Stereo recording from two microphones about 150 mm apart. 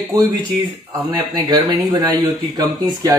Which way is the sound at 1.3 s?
25° right (ahead or behind).